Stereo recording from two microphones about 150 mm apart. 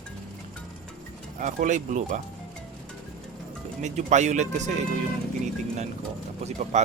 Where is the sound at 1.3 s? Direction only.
55° right (ahead or behind).